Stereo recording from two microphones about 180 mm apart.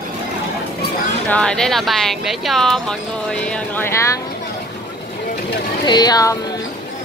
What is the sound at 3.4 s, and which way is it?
Speech, 10° left (ahead or behind).